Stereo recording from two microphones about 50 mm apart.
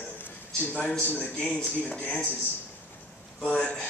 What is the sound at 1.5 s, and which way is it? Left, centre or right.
Speech, left.